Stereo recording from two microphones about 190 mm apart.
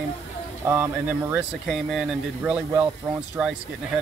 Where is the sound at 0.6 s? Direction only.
15° right (ahead or behind).